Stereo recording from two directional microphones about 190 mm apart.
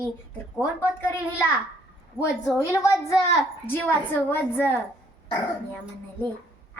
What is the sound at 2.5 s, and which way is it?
A woman's voice, 15° left (ahead or behind).